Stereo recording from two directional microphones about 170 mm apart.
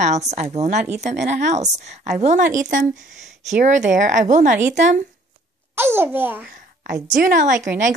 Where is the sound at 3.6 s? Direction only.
45° right (ahead or behind).